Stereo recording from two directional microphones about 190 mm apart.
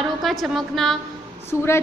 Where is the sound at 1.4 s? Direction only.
15° left (ahead or behind).